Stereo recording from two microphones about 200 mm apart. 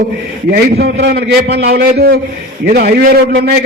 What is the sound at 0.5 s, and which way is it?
A man's voice, 55° right (ahead or behind).